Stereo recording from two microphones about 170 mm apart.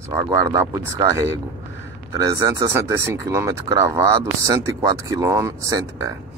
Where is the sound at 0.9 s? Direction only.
20° right (ahead or behind).